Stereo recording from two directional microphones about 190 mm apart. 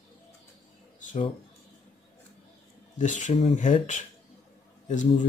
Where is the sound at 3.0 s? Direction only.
40° left (ahead or behind).